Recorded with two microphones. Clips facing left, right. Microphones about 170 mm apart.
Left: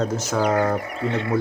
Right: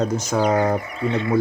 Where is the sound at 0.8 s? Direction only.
60° left (ahead or behind).